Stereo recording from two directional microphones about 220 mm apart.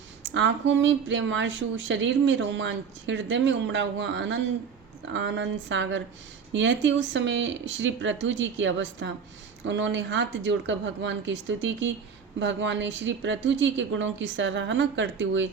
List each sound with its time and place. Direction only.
0.2 s speech: 55° right (ahead or behind)